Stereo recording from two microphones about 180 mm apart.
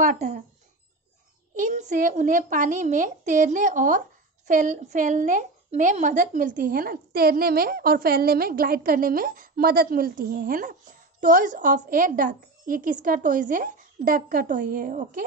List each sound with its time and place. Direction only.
0.0 s a woman's voice: 45° right (ahead or behind)
1.5 s a woman's voice: 45° right (ahead or behind)